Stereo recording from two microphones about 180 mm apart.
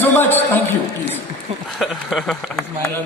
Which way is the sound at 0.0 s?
10° left (ahead or behind).